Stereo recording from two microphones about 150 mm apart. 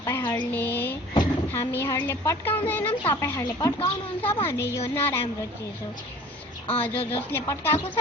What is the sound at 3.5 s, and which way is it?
Speech, 30° left (ahead or behind).